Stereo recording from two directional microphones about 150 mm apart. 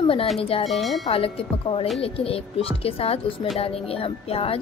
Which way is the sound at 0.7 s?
Centre (ahead or behind).